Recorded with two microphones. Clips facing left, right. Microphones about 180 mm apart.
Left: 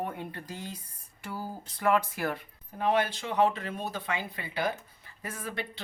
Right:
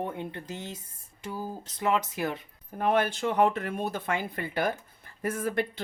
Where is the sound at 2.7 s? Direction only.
50° right (ahead or behind).